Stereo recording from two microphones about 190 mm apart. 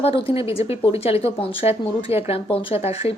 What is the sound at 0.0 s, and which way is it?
Speech, 30° left (ahead or behind).